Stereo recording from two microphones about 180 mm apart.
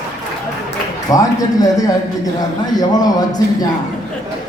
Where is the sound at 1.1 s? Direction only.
20° left (ahead or behind).